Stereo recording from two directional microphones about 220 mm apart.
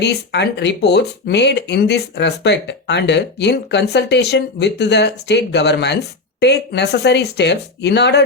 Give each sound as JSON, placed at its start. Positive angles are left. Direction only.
{"t": 0.0, "sound": "speech", "side_deg": 50}